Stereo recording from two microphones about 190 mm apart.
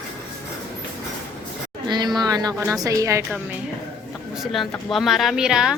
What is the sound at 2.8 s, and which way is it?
Speech, 15° right (ahead or behind).